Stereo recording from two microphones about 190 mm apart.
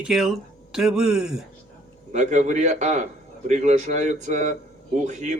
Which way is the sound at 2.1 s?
40° right (ahead or behind).